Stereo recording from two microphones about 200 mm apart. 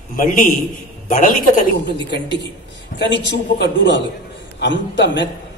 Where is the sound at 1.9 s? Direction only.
60° left (ahead or behind).